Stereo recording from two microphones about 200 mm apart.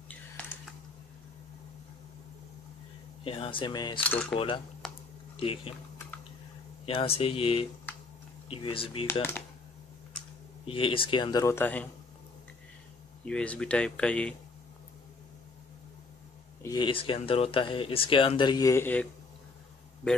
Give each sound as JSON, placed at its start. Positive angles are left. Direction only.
{"t": 0.4, "sound": "a sound", "side_deg": 10}
{"t": 3.3, "sound": "speech", "side_deg": 25}
{"t": 4.0, "sound": "speech", "side_deg": 5}
{"t": 4.8, "sound": "a sound", "side_deg": 0}
{"t": 5.4, "sound": "speech", "side_deg": 25}
{"t": 6.9, "sound": "speech", "side_deg": 30}
{"t": 10.7, "sound": "speech", "side_deg": 25}
{"t": 13.2, "sound": "speech", "side_deg": 5}
{"t": 16.6, "sound": "speech", "side_deg": 20}